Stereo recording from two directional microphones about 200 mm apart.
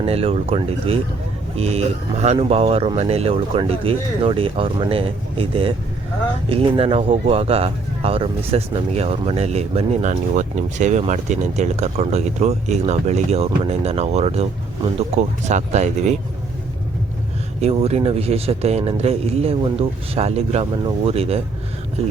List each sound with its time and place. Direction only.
0.0 s speech: 30° right (ahead or behind)
15.4 s speech: 35° right (ahead or behind)
17.6 s speech: 30° right (ahead or behind)